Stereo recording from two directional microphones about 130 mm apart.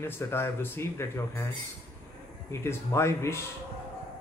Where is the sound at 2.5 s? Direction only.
20° left (ahead or behind).